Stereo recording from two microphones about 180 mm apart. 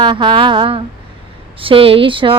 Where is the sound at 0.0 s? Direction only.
25° right (ahead or behind).